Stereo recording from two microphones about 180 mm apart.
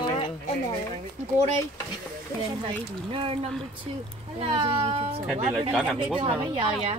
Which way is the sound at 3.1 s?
30° right (ahead or behind).